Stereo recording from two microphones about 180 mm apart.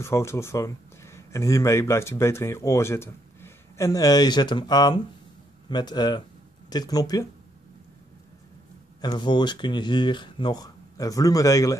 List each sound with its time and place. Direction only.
0.0 s speech: 15° left (ahead or behind)
9.0 s speech: 25° left (ahead or behind)